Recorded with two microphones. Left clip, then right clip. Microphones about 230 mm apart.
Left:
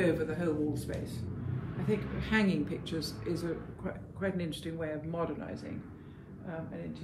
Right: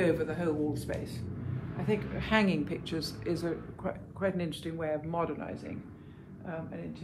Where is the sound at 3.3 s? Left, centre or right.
Centre.